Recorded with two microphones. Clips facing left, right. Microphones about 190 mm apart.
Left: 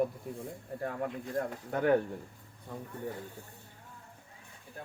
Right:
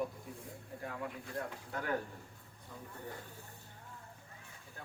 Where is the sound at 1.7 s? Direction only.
55° left (ahead or behind).